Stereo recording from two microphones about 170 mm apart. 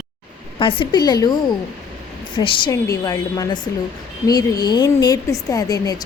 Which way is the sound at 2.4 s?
25° left (ahead or behind).